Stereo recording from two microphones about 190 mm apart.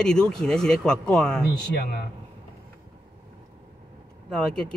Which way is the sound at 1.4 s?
60° left (ahead or behind).